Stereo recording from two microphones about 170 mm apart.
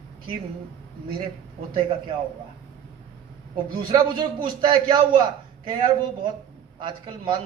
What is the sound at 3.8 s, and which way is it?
A man's voice, 25° right (ahead or behind).